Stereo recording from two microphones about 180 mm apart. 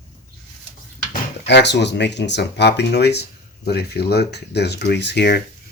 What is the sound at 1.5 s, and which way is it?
Speech, 70° left (ahead or behind).